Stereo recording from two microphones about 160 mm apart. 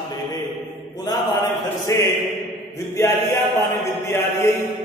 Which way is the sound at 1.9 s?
20° left (ahead or behind).